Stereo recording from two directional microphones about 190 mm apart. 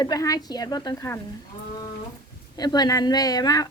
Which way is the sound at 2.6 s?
20° left (ahead or behind).